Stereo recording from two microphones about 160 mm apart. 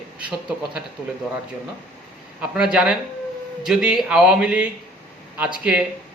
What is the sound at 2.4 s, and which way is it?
A man's voice, 5° right (ahead or behind).